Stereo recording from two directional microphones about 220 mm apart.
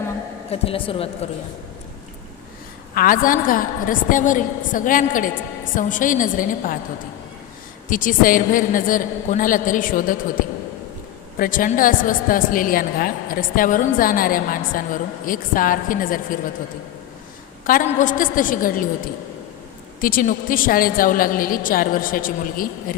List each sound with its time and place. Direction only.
0.5 s speech: 25° left (ahead or behind)
2.9 s a woman's voice: 40° left (ahead or behind)
7.9 s a woman's voice: 40° left (ahead or behind)
11.3 s a woman's voice: 40° left (ahead or behind)
17.7 s a woman's voice: 35° left (ahead or behind)
20.0 s a woman's voice: 40° left (ahead or behind)